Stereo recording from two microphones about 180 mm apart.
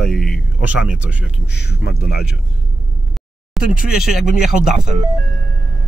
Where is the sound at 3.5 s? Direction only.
5° right (ahead or behind).